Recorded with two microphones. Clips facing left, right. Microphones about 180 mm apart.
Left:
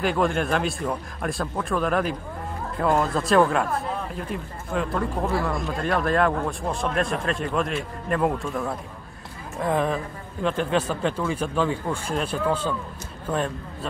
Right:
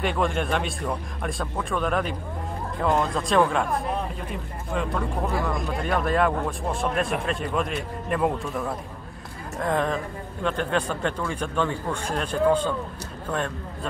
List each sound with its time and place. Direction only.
0.0 s speech: centre (ahead or behind)